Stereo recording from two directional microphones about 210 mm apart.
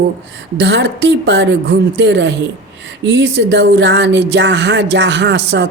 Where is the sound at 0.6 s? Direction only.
55° right (ahead or behind).